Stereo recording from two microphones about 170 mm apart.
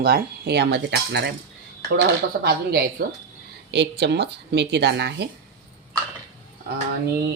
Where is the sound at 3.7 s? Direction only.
90° right.